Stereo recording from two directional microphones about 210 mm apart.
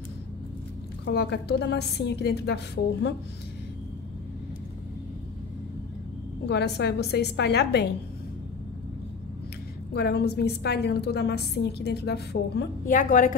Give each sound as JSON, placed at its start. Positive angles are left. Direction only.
{"t": 1.0, "sound": "a woman's voice", "side_deg": 55}
{"t": 6.4, "sound": "a woman's voice", "side_deg": 55}
{"t": 9.9, "sound": "a woman's voice", "side_deg": 50}